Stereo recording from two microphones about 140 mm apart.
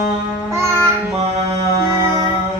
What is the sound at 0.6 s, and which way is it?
Child singing, 20° right (ahead or behind).